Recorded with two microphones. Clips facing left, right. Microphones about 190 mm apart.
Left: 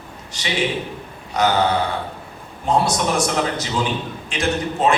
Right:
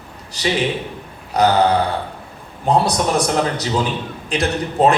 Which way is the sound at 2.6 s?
35° right (ahead or behind).